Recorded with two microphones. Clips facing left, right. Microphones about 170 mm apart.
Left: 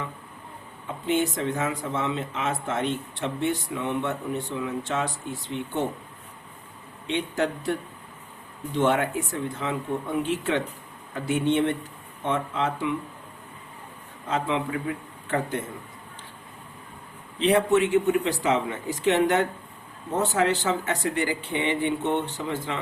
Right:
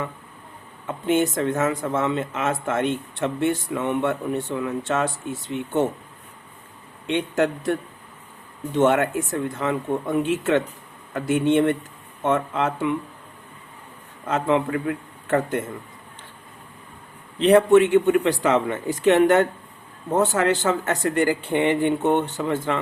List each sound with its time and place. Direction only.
0.9 s speech: 50° right (ahead or behind)
7.1 s speech: 50° right (ahead or behind)
14.3 s speech: 50° right (ahead or behind)
17.4 s speech: 55° right (ahead or behind)